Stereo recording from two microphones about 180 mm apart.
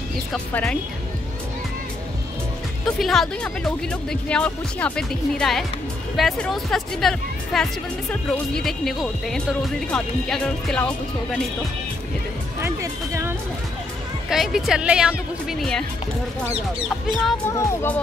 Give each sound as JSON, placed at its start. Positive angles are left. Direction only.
{"t": 0.5, "sound": "speech", "side_deg": 10}
{"t": 3.0, "sound": "speech", "side_deg": 0}
{"t": 12.6, "sound": "speech", "side_deg": -15}
{"t": 14.3, "sound": "speech", "side_deg": 0}
{"t": 17.5, "sound": "speech", "side_deg": 15}